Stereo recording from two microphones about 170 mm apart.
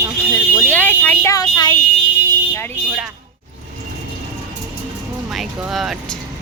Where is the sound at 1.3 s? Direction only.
25° left (ahead or behind).